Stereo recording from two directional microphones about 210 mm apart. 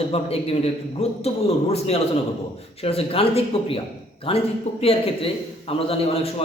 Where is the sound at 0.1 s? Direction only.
30° left (ahead or behind).